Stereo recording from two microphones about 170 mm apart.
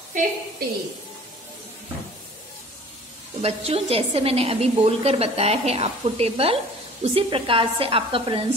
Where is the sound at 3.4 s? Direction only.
35° right (ahead or behind).